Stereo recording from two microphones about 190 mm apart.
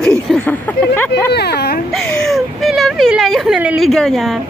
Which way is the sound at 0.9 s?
10° left (ahead or behind).